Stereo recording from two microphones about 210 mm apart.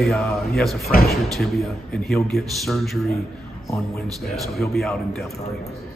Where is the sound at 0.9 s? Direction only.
45° left (ahead or behind).